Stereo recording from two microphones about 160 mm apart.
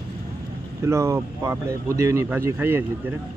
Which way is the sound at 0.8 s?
15° right (ahead or behind).